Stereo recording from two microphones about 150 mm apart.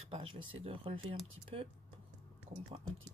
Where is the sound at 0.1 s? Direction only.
35° right (ahead or behind).